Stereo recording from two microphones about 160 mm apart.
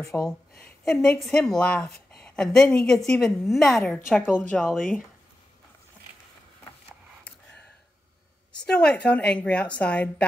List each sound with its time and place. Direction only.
0.0 s speech: 20° left (ahead or behind)
0.6 s a woman's voice: 5° left (ahead or behind)
8.5 s a woman's voice: 5° left (ahead or behind)